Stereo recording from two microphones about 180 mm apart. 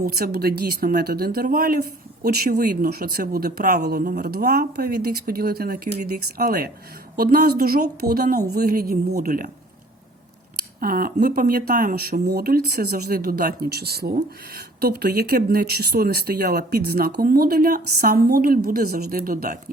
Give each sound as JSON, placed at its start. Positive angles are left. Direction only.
{"t": 0.0, "sound": "speech", "side_deg": -60}
{"t": 10.8, "sound": "speech", "side_deg": -55}